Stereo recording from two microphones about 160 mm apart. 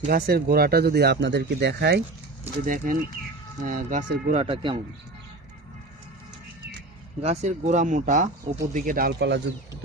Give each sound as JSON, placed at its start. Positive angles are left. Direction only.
{"t": 0.1, "sound": "speech", "side_deg": -70}
{"t": 2.6, "sound": "speech", "side_deg": -60}
{"t": 4.4, "sound": "speech", "side_deg": -35}
{"t": 7.2, "sound": "speech", "side_deg": -45}